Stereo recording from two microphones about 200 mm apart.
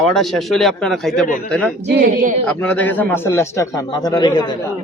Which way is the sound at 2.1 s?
40° right (ahead or behind).